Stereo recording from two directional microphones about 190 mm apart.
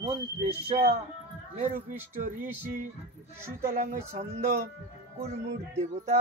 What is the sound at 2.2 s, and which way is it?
Speech, 40° right (ahead or behind).